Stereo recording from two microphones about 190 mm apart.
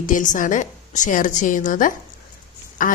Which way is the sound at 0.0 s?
40° left (ahead or behind).